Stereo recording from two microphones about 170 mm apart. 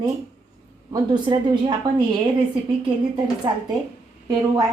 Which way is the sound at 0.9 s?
30° right (ahead or behind).